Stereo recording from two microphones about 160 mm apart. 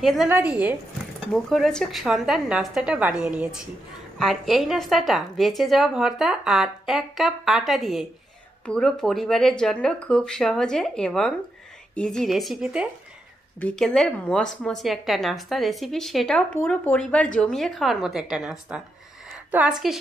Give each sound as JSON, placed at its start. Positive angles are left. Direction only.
{"t": 0.0, "sound": "speech", "side_deg": 0}
{"t": 1.3, "sound": "a woman's voice", "side_deg": 0}